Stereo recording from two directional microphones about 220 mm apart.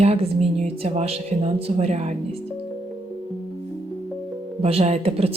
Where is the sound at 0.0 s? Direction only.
30° right (ahead or behind).